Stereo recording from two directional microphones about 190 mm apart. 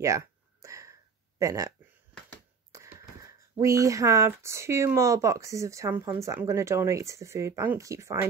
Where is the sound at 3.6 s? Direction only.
15° right (ahead or behind).